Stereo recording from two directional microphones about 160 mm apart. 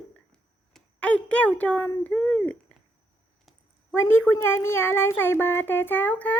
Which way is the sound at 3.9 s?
15° left (ahead or behind).